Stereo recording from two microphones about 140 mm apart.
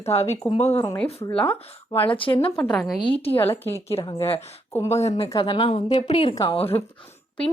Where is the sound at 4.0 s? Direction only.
30° left (ahead or behind).